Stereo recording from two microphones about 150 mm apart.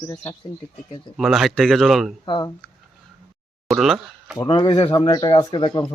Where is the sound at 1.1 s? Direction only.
Centre (ahead or behind).